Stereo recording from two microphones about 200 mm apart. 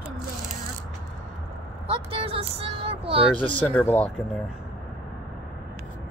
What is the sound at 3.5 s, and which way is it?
Speech, 10° left (ahead or behind).